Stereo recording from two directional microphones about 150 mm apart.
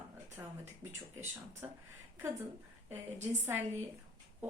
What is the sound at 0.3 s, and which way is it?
Speech, 15° right (ahead or behind).